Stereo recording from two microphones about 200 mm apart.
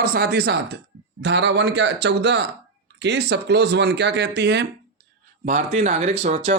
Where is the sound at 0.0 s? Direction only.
50° right (ahead or behind).